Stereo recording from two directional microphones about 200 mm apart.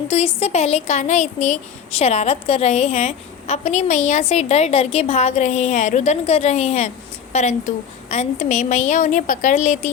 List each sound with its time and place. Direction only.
0.1 s speech: 30° left (ahead or behind)